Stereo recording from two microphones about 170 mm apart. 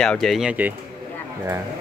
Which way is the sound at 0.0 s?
5° left (ahead or behind).